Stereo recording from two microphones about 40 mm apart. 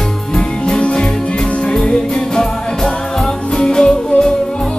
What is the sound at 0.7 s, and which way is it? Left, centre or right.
Music, left.